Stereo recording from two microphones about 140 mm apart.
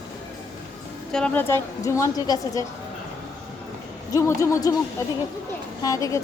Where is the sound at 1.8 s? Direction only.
20° left (ahead or behind).